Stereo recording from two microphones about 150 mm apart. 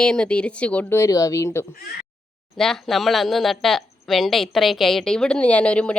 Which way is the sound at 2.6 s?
Centre (ahead or behind).